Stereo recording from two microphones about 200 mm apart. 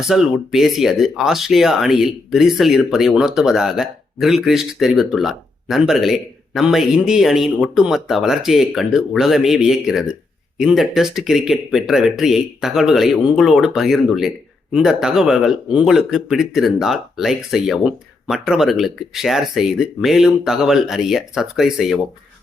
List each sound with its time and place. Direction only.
0.0 s speech: centre (ahead or behind)